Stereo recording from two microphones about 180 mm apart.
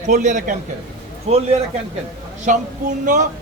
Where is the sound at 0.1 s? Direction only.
45° right (ahead or behind).